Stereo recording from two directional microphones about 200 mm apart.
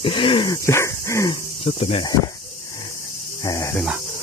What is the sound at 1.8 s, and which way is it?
Speech, 30° left (ahead or behind).